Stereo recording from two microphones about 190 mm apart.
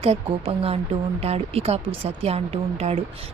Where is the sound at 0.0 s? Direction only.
30° right (ahead or behind).